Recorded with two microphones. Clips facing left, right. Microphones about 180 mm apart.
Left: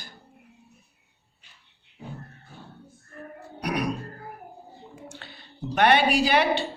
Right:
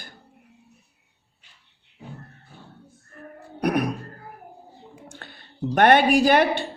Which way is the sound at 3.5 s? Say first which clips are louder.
Right 5 dB; 50° right (ahead or behind).